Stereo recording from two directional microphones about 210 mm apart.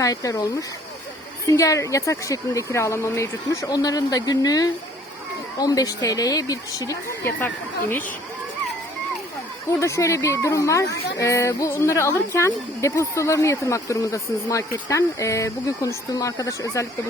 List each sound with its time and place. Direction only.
0.0 s speech: 15° left (ahead or behind)
1.5 s speech: 15° left (ahead or behind)
9.6 s speech: 15° left (ahead or behind)